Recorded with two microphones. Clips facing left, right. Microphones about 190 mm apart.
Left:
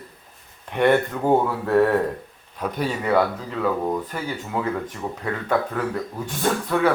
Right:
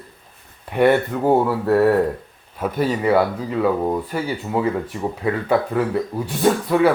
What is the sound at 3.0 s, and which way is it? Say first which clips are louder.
Speech: right 1 dB; 10° right (ahead or behind).